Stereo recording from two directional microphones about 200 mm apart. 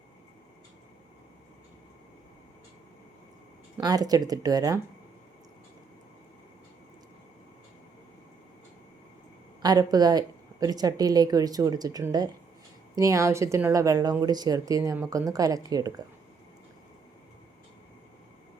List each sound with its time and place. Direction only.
3.8 s a woman's voice: 20° right (ahead or behind)
9.6 s a woman's voice: 20° right (ahead or behind)